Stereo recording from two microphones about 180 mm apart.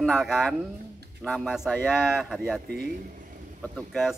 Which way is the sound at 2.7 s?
55° right (ahead or behind).